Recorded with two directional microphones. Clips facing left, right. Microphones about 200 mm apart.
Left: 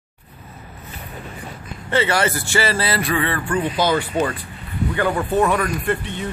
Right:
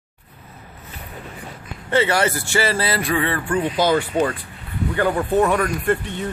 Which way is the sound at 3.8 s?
45° right (ahead or behind).